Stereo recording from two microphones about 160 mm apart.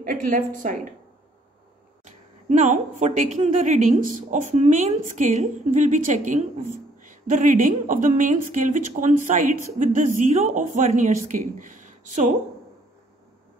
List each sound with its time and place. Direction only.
0.0 s a woman's voice: 60° right (ahead or behind)
2.4 s a woman's voice: 50° right (ahead or behind)